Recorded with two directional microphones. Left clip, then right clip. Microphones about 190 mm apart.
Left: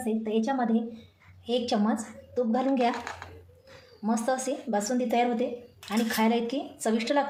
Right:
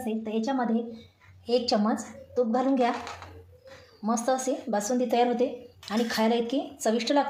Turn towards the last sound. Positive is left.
turn(degrees=-5)  # may be behind; listen again after turning